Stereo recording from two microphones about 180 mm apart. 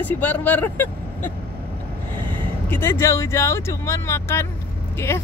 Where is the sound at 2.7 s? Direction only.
15° left (ahead or behind).